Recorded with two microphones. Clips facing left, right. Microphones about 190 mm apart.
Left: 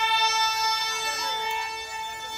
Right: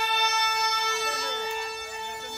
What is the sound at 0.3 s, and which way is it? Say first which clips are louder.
Music: left 1 dB; 55° right (ahead or behind).